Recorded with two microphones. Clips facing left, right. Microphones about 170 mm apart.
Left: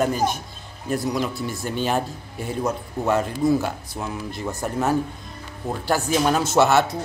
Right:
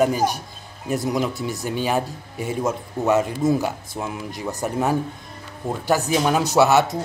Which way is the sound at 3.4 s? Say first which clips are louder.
Even; 20° right (ahead or behind).